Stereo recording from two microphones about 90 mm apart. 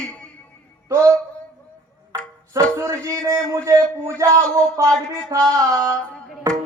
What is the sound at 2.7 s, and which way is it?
Speech, 35° right (ahead or behind).